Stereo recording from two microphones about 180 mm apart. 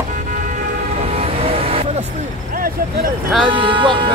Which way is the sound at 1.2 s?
35° right (ahead or behind).